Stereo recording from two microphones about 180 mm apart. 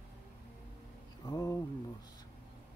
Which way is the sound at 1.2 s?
20° left (ahead or behind).